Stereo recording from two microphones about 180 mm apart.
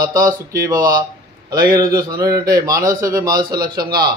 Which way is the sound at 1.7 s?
20° right (ahead or behind).